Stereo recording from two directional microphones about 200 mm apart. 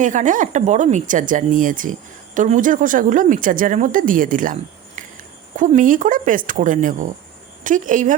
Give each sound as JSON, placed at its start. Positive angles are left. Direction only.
{"t": 0.0, "sound": "speech", "side_deg": -40}